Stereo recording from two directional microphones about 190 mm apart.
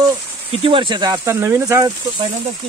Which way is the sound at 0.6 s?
25° right (ahead or behind).